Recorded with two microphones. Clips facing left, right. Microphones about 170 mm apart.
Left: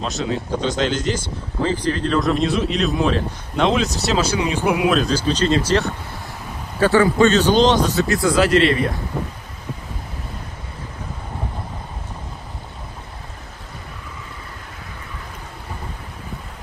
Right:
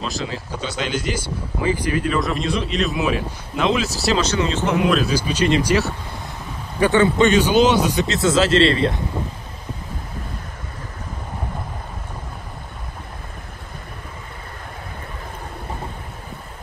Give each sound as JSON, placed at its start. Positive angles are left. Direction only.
{"t": 0.0, "sound": "speech", "side_deg": 0}
{"t": 5.0, "sound": "speech", "side_deg": -10}
{"t": 6.8, "sound": "speech", "side_deg": -20}